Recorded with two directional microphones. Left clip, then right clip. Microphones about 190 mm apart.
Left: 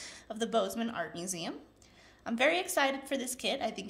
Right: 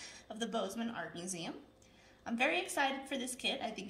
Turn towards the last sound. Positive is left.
turn(degrees=50)  # may be behind; listen again after turning